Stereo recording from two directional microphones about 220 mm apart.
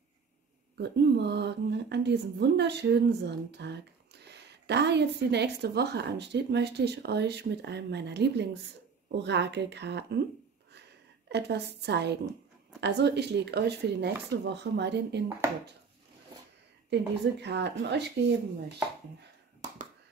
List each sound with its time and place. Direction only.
0.7 s a woman's voice: 50° right (ahead or behind)
10.7 s a sound: 50° right (ahead or behind)
12.8 s a woman's voice: 50° right (ahead or behind)
16.9 s a woman's voice: 50° right (ahead or behind)